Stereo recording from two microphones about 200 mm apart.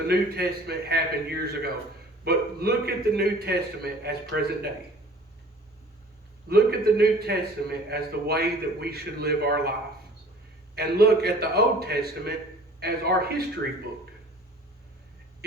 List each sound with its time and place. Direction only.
0.1 s a man's voice: 55° right (ahead or behind)
6.5 s a man's voice: 50° right (ahead or behind)
10.8 s a man's voice: 55° right (ahead or behind)